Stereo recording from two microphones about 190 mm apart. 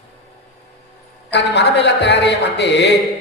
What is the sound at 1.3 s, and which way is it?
A man's voice, 65° left (ahead or behind).